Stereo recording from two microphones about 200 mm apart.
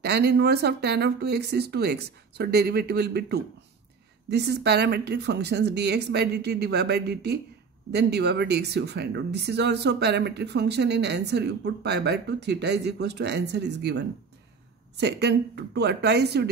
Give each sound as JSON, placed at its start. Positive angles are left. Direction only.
{"t": 0.0, "sound": "speech", "side_deg": -55}